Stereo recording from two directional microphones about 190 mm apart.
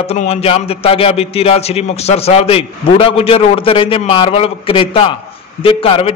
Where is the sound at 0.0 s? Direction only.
30° left (ahead or behind).